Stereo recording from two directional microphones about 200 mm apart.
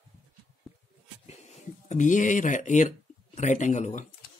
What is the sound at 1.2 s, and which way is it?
Speech, 35° left (ahead or behind).